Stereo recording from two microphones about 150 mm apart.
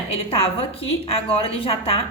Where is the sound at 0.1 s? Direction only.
40° left (ahead or behind).